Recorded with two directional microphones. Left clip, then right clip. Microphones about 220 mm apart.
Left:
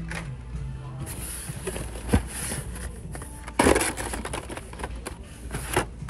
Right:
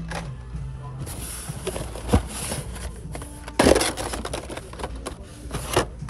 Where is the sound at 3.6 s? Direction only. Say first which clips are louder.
Right 3 dB; centre (ahead or behind).